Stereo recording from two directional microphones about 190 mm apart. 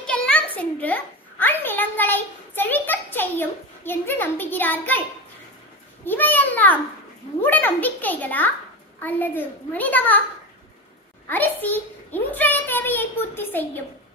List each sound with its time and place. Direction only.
0.0 s a child's voice: 5° left (ahead or behind)
6.0 s a child's voice: 10° left (ahead or behind)
11.2 s a child's voice: 10° left (ahead or behind)